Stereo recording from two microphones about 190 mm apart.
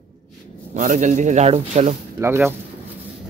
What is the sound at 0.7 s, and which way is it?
Speech, 40° right (ahead or behind).